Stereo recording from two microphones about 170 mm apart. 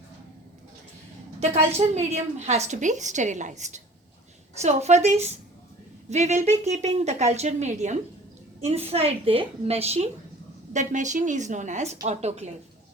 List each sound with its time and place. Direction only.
1.4 s a woman's voice: 40° right (ahead or behind)